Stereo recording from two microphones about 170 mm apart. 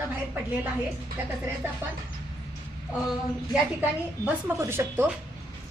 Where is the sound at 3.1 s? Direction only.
5° right (ahead or behind).